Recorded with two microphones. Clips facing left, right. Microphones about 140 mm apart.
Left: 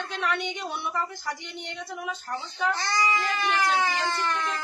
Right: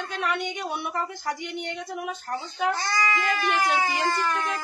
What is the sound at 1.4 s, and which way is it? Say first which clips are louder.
Speech: right 6 dB; 55° right (ahead or behind).